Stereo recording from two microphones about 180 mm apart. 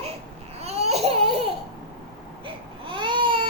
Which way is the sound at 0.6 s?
35° right (ahead or behind).